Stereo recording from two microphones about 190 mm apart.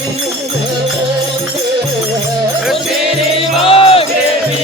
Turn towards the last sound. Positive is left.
turn(degrees=30)  # may be behind; listen again after turning